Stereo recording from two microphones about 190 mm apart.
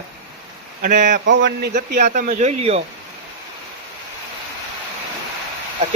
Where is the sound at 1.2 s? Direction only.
70° right (ahead or behind).